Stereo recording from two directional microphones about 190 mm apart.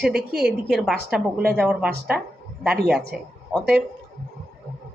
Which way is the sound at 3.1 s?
5° right (ahead or behind).